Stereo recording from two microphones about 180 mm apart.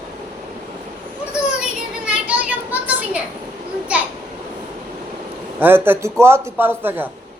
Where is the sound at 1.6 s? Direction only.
5° right (ahead or behind).